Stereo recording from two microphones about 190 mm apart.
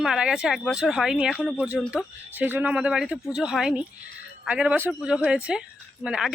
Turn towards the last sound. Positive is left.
turn(degrees=-5)  # may be behind; listen again after turning